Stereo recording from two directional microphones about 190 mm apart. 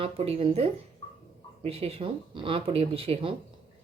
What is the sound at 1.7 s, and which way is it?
Speech, 30° right (ahead or behind).